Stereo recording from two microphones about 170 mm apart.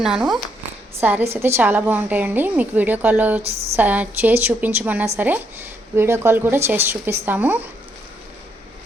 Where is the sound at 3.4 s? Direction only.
35° right (ahead or behind).